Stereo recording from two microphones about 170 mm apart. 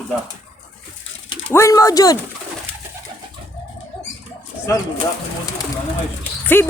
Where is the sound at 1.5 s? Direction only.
15° left (ahead or behind).